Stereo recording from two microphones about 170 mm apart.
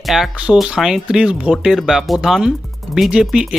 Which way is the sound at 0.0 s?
Centre (ahead or behind).